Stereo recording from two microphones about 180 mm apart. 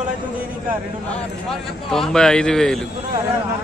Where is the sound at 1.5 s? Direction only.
Centre (ahead or behind).